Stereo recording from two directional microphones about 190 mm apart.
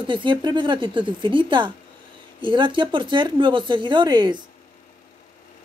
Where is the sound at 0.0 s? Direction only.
25° right (ahead or behind).